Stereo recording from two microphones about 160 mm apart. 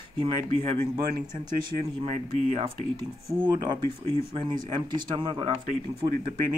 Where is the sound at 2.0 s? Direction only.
45° right (ahead or behind).